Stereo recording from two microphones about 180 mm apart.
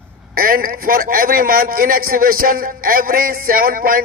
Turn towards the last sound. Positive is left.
turn(degrees=-50)  # may be behind; listen again after turning